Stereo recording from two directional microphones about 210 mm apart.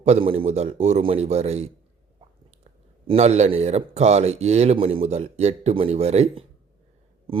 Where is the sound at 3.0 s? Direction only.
30° right (ahead or behind).